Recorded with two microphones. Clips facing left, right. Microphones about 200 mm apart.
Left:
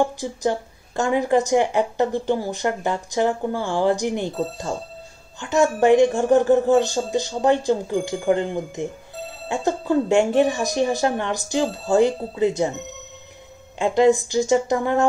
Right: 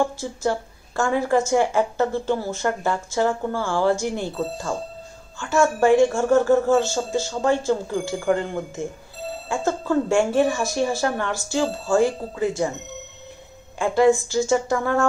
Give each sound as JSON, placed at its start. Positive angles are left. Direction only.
{"t": 0.0, "sound": "a woman's voice", "side_deg": 15}
{"t": 13.7, "sound": "a woman's voice", "side_deg": 20}